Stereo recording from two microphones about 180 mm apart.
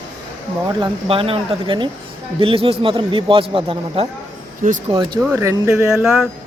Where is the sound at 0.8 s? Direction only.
30° right (ahead or behind).